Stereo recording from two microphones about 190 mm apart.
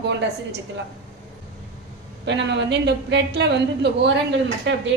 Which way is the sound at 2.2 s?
65° right (ahead or behind).